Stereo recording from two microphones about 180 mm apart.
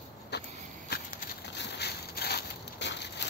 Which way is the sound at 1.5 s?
65° left (ahead or behind).